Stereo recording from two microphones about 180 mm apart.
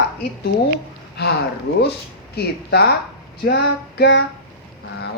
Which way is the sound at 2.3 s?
65° left (ahead or behind).